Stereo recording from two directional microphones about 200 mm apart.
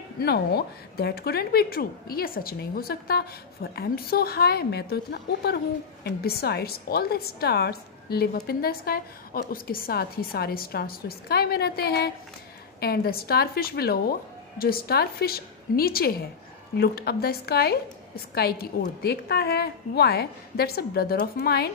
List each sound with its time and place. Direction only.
0.2 s a woman's voice: 55° left (ahead or behind)